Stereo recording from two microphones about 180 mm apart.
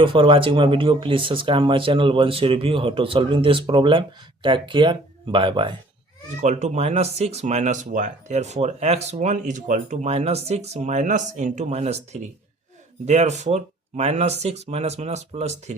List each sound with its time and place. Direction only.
0.0 s speech: 30° right (ahead or behind)
6.4 s speech: 40° right (ahead or behind)
13.1 s speech: 40° right (ahead or behind)